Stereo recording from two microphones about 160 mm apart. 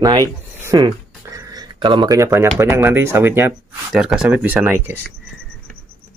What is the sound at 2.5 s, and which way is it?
Speech, 15° right (ahead or behind).